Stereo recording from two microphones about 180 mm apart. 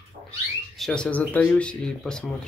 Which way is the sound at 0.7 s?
5° left (ahead or behind).